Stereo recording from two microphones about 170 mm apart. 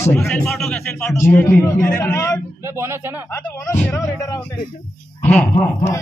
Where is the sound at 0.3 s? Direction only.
5° left (ahead or behind).